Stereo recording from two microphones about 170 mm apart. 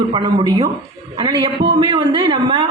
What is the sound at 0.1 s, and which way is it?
A woman's voice, 30° right (ahead or behind).